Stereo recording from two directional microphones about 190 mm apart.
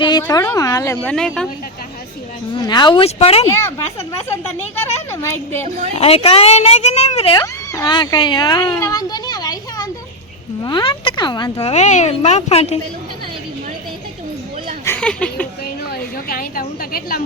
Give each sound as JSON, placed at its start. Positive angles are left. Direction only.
{"t": 0.0, "sound": "speech", "side_deg": 20}
{"t": 1.0, "sound": "speech", "side_deg": 5}
{"t": 2.6, "sound": "speech", "side_deg": 25}
{"t": 5.1, "sound": "speech", "side_deg": 15}
{"t": 6.0, "sound": "speech", "side_deg": 30}
{"t": 7.3, "sound": "a child's voice", "side_deg": 15}
{"t": 11.6, "sound": "speech", "side_deg": 35}
{"t": 14.8, "sound": "a sound", "side_deg": 5}
{"t": 15.6, "sound": "a woman's voice", "side_deg": 55}